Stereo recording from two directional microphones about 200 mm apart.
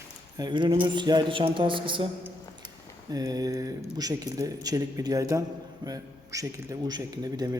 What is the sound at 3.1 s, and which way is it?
A man's voice, 20° right (ahead or behind).